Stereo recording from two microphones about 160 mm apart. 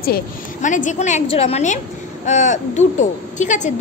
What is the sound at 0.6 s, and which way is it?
A child's voice, 50° left (ahead or behind).